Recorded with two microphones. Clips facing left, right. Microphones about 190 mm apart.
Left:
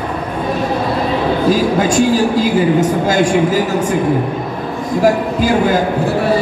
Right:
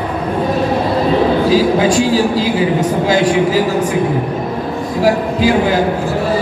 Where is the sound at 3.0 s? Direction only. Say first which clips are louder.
Even; 50° left (ahead or behind).